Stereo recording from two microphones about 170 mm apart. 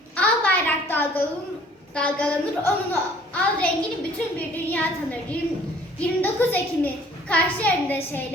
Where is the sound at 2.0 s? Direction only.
5° left (ahead or behind).